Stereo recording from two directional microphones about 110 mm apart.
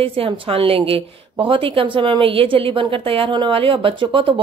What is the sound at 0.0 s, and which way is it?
A woman's voice, 60° right (ahead or behind).